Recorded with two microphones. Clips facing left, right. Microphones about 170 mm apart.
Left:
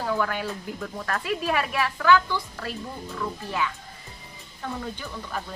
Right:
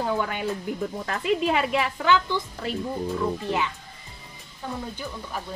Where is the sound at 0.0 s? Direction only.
20° right (ahead or behind).